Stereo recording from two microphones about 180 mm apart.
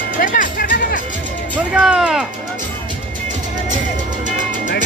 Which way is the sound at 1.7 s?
5° right (ahead or behind).